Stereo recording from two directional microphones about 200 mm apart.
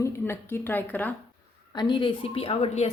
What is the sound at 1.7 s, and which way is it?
Speech, 25° left (ahead or behind).